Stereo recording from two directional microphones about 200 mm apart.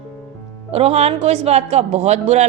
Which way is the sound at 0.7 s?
30° right (ahead or behind).